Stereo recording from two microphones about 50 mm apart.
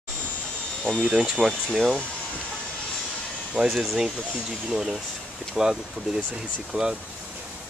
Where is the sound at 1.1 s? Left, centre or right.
Centre.